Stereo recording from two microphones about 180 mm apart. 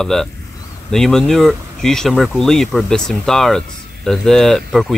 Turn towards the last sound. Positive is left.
turn(degrees=0)  # may be behind; listen again after turning